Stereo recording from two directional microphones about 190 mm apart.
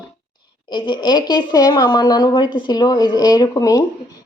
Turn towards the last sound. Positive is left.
turn(degrees=20)  # may be behind; listen again after turning